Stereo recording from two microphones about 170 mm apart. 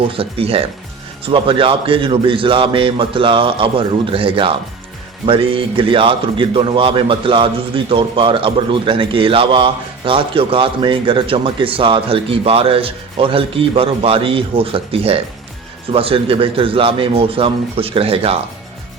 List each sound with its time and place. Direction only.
0.1 s a man's voice: 35° right (ahead or behind)